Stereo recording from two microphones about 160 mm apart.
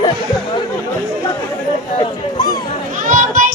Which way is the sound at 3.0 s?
55° right (ahead or behind).